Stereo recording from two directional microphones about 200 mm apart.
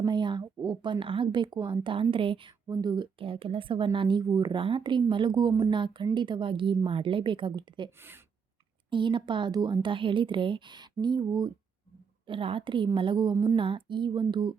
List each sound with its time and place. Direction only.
0.0 s speech: 20° right (ahead or behind)
8.9 s speech: 25° right (ahead or behind)